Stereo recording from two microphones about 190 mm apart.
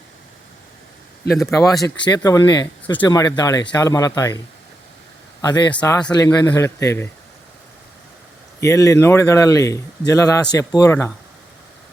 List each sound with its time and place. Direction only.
1.5 s speech: 15° left (ahead or behind)
5.4 s speech: 20° left (ahead or behind)
8.6 s speech: 15° left (ahead or behind)